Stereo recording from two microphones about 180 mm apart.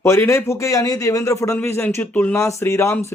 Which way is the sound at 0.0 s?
15° left (ahead or behind).